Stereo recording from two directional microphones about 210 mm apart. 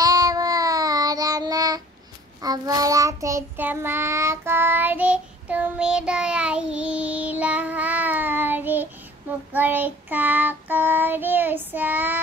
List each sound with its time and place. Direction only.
0.0 s child singing: 15° right (ahead or behind)